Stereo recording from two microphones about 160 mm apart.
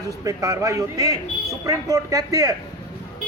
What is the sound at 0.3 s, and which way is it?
A man's voice, 20° right (ahead or behind).